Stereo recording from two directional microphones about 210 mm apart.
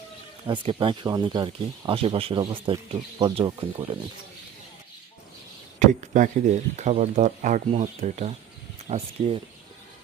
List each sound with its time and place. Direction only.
0.4 s speech: 25° right (ahead or behind)
5.8 s speech: 35° right (ahead or behind)